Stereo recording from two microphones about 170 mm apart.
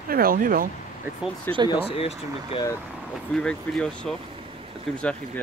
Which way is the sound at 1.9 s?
35° left (ahead or behind).